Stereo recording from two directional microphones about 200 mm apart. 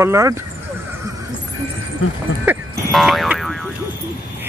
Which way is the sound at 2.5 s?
Centre (ahead or behind).